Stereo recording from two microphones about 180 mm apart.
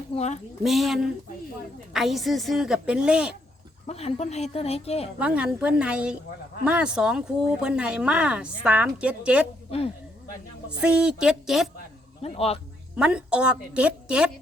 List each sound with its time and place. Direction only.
0.1 s speech: 35° left (ahead or behind)
0.6 s speech: centre (ahead or behind)
3.8 s speech: 35° left (ahead or behind)
5.2 s speech: 5° right (ahead or behind)
9.6 s speech: 35° left (ahead or behind)
10.8 s speech: 5° right (ahead or behind)
12.2 s speech: 35° left (ahead or behind)
13.0 s speech: 5° right (ahead or behind)